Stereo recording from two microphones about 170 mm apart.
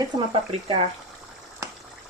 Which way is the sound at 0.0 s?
35° right (ahead or behind).